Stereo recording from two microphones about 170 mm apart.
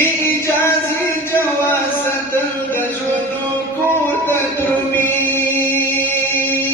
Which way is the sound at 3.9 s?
10° left (ahead or behind).